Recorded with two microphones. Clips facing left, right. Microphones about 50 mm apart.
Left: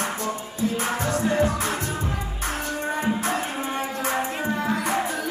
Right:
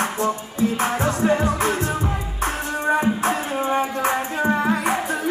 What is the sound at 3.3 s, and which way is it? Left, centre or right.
Music, right.